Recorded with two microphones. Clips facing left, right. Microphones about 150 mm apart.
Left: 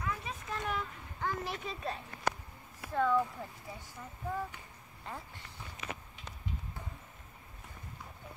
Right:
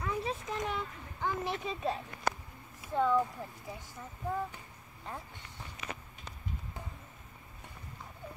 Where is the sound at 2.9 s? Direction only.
15° right (ahead or behind).